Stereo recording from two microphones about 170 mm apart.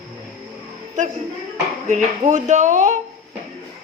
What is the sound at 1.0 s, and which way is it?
Speech, 45° right (ahead or behind).